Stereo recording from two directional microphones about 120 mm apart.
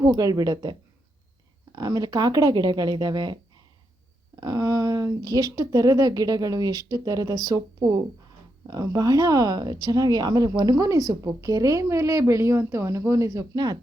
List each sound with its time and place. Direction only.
0.0 s speech: 30° right (ahead or behind)
4.4 s a woman's voice: 30° right (ahead or behind)